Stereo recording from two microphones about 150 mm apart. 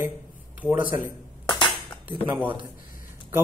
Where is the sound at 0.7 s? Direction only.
60° left (ahead or behind).